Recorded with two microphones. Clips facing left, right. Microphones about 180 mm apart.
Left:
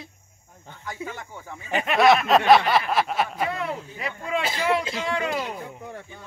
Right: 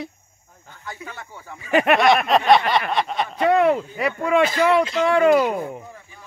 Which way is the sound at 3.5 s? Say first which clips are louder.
Right 13 dB; 70° right (ahead or behind).